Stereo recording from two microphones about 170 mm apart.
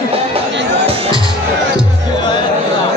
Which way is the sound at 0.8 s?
35° right (ahead or behind).